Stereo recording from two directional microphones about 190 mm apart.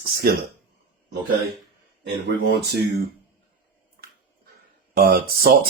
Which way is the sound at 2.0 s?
60° right (ahead or behind).